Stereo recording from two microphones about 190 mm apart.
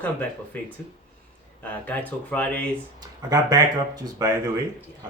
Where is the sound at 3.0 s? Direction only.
20° right (ahead or behind).